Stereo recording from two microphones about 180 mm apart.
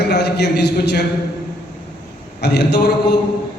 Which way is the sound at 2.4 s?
65° left (ahead or behind).